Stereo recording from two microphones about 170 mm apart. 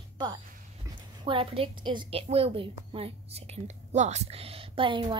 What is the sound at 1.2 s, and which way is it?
A woman's voice, 30° right (ahead or behind).